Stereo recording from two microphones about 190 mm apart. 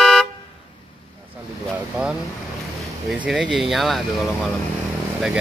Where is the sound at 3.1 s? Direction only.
5° right (ahead or behind).